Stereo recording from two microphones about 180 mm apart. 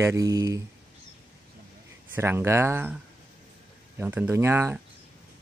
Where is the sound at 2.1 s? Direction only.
15° right (ahead or behind).